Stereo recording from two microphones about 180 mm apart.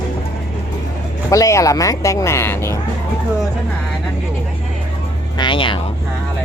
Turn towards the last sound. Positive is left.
turn(degrees=30)  # may be behind; listen again after turning